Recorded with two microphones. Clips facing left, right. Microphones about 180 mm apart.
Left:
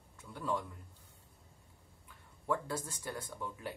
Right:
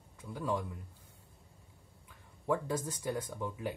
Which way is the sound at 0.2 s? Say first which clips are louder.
Right 2 dB; 10° right (ahead or behind).